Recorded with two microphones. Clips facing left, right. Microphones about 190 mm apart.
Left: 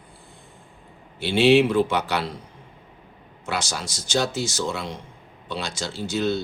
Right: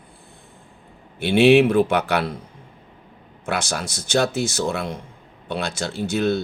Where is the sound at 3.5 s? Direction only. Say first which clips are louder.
Right 3 dB; 60° right (ahead or behind).